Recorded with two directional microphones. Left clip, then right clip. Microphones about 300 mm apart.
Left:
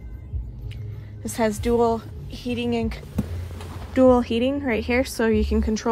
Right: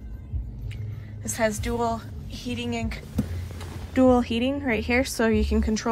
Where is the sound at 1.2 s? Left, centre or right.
Centre.